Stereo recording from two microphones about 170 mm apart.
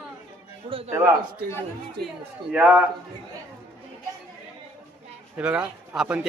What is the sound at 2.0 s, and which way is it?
Speech, 70° right (ahead or behind).